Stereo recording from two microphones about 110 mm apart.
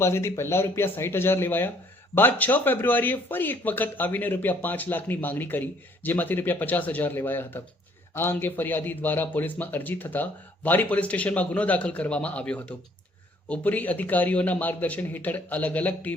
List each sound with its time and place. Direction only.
0.0 s speech: 25° left (ahead or behind)